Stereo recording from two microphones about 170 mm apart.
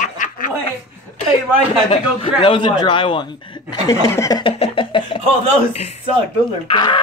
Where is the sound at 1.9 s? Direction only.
30° left (ahead or behind).